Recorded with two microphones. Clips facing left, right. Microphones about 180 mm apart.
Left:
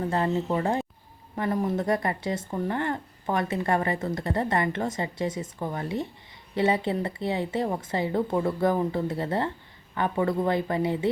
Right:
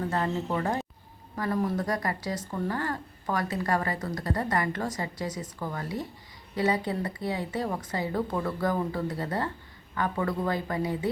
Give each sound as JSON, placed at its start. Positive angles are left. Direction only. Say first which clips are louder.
{"t": 0.0, "sound": "speech", "louder": "left 3 dB", "side_deg": 30}